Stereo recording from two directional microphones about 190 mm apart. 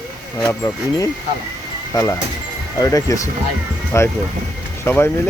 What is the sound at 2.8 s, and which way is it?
Speech, 15° left (ahead or behind).